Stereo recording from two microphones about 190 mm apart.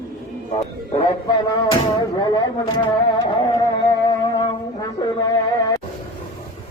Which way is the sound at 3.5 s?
20° left (ahead or behind).